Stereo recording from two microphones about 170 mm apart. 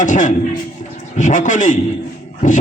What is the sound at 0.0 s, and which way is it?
A man's voice, 45° left (ahead or behind).